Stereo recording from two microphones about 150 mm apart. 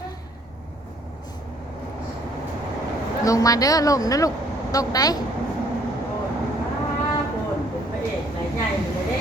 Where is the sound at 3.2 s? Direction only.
20° left (ahead or behind).